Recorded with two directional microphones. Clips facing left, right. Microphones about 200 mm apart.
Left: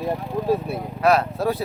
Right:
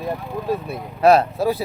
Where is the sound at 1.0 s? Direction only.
30° right (ahead or behind).